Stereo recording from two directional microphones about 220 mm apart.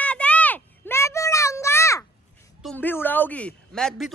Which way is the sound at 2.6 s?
5° left (ahead or behind).